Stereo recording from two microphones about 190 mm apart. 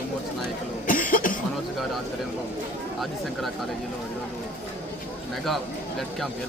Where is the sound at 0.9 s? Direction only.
45° left (ahead or behind).